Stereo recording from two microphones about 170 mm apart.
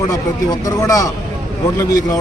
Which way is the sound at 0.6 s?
20° left (ahead or behind).